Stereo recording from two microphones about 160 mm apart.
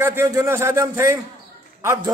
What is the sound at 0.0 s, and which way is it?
A man's voice, 15° right (ahead or behind).